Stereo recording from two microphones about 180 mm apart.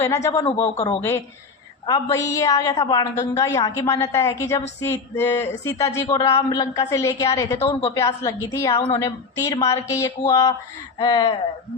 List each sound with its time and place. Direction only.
0.0 s speech: 15° left (ahead or behind)
0.4 s speech: 35° left (ahead or behind)
1.9 s speech: 15° left (ahead or behind)
7.7 s speech: 30° left (ahead or behind)
7.9 s speech: 20° left (ahead or behind)